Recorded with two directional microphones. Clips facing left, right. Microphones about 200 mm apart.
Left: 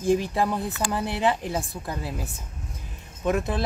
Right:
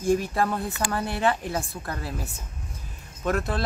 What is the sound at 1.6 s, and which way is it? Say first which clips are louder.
Speech: left 1 dB; 5° left (ahead or behind).